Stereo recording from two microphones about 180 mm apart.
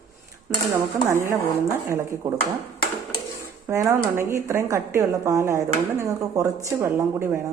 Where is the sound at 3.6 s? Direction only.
15° right (ahead or behind).